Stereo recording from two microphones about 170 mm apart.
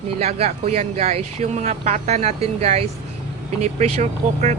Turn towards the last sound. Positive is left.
turn(degrees=-40)  # may be behind; listen again after turning